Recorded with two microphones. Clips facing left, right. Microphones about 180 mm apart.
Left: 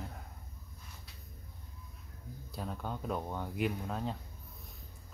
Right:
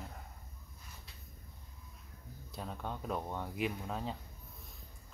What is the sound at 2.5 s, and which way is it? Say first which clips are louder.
Speech: left 2 dB; centre (ahead or behind).